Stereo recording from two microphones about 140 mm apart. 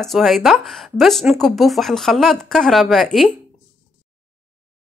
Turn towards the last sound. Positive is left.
turn(degrees=0)  # may be behind; listen again after turning